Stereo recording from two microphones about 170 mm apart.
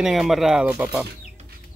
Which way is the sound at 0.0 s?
Centre (ahead or behind).